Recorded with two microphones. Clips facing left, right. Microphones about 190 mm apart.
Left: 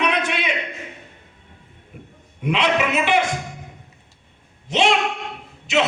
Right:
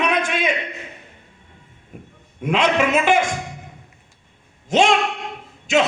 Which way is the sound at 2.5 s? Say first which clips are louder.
Right 3 dB; 45° right (ahead or behind).